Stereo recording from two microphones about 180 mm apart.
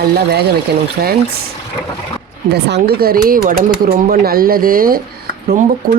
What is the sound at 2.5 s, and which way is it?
Speech, 70° right (ahead or behind).